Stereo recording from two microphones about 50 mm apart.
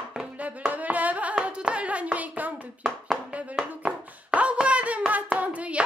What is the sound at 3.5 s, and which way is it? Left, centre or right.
Hands, centre.